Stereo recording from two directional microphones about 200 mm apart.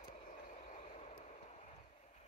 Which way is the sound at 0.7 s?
35° left (ahead or behind).